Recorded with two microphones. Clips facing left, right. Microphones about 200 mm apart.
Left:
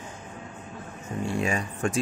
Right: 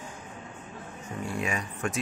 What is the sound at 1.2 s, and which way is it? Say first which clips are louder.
Speech: left 4 dB; 30° left (ahead or behind).